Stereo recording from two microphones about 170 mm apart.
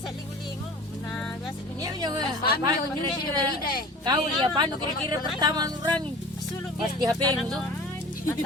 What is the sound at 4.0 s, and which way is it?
Speech, 25° right (ahead or behind).